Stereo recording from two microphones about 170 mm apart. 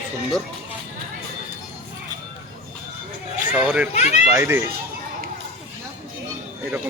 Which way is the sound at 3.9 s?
45° left (ahead or behind).